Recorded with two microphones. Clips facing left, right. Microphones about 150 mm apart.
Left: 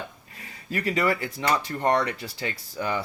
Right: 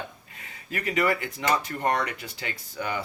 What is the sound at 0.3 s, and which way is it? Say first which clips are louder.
Speech: left 4 dB; 30° left (ahead or behind).